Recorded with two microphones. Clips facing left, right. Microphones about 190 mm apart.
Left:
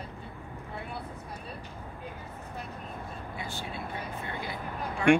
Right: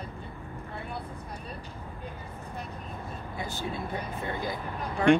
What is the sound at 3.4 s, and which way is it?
Vehicle, 40° right (ahead or behind).